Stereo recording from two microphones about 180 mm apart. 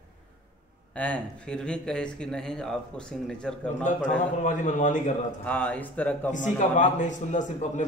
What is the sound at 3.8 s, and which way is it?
A man's voice, 45° left (ahead or behind).